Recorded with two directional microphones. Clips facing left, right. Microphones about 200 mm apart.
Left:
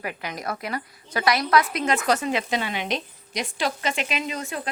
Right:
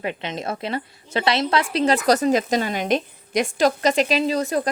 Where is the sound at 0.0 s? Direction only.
25° right (ahead or behind).